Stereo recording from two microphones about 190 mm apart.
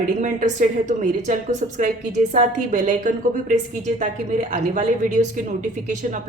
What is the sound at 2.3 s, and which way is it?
A woman's voice, 40° right (ahead or behind).